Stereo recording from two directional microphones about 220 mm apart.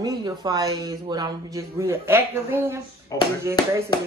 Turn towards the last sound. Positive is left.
turn(degrees=-10)  # may be behind; listen again after turning